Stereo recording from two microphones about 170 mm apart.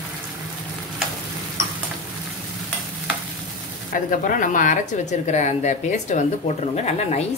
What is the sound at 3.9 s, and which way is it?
A woman's voice, 55° left (ahead or behind).